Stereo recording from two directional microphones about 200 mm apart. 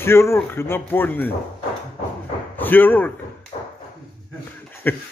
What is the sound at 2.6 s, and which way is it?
Speech, 10° left (ahead or behind).